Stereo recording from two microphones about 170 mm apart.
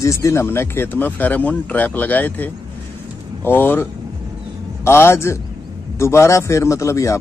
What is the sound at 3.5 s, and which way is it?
Speech, 10° left (ahead or behind).